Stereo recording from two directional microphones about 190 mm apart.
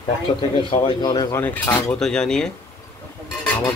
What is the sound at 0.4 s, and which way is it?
Speech, 25° left (ahead or behind).